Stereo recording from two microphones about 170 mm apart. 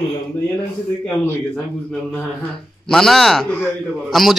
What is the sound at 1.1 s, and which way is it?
A man's voice, 10° left (ahead or behind).